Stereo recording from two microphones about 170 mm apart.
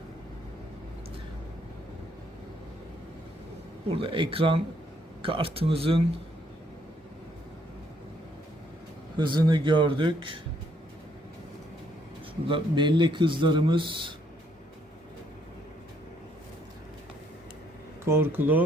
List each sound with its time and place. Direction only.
3.8 s speech: 30° right (ahead or behind)
9.1 s speech: 25° right (ahead or behind)
12.5 s speech: 30° right (ahead or behind)
18.0 s speech: 15° right (ahead or behind)